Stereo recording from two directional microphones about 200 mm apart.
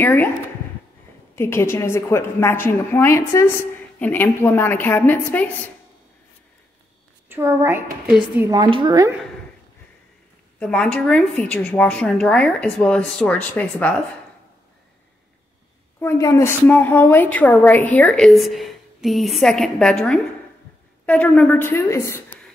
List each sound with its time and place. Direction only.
0.0 s a woman's voice: 10° left (ahead or behind)
1.3 s a woman's voice: 15° left (ahead or behind)
7.2 s a woman's voice: 10° right (ahead or behind)
8.5 s a woman's voice: 25° right (ahead or behind)
10.6 s a woman's voice: 5° left (ahead or behind)
16.0 s a woman's voice: 15° left (ahead or behind)